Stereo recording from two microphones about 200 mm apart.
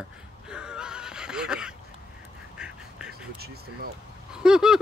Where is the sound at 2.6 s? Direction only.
5° right (ahead or behind).